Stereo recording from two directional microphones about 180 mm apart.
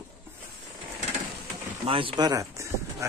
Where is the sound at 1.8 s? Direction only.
30° right (ahead or behind).